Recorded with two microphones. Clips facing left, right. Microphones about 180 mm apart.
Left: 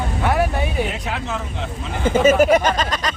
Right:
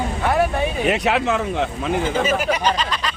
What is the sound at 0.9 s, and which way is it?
Speech, 75° right (ahead or behind).